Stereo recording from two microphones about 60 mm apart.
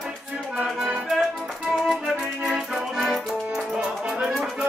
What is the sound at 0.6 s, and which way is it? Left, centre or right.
Music, centre.